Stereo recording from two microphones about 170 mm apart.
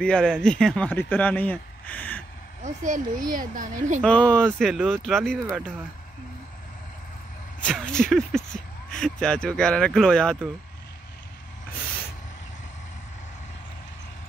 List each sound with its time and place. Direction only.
0.0 s a man's voice: 5° left (ahead or behind)
2.6 s speech: 45° right (ahead or behind)
4.0 s a man's voice: 5° left (ahead or behind)
7.6 s speech: 5° left (ahead or behind)